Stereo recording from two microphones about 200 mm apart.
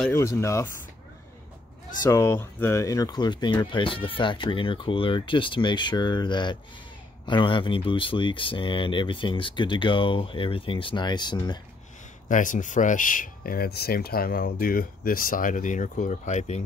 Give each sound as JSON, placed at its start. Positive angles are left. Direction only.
{"t": 0.0, "sound": "speech", "side_deg": 15}
{"t": 2.0, "sound": "speech", "side_deg": 15}
{"t": 12.3, "sound": "speech", "side_deg": 40}